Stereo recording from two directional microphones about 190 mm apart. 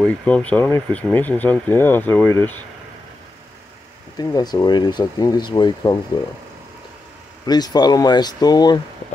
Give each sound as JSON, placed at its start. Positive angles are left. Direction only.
{"t": 0.0, "sound": "speech", "side_deg": 5}
{"t": 4.2, "sound": "speech", "side_deg": 20}
{"t": 7.4, "sound": "speech", "side_deg": 20}